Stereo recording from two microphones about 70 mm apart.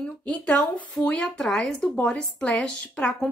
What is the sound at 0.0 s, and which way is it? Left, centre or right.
Speech, centre.